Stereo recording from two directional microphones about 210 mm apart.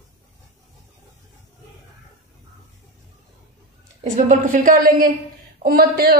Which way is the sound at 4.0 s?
35° right (ahead or behind).